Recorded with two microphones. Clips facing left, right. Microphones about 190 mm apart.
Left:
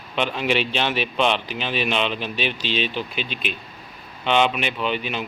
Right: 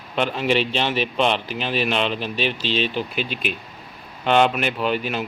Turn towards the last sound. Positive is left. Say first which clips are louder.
# right 2 dB
turn(degrees=-45)  # may be behind; listen again after turning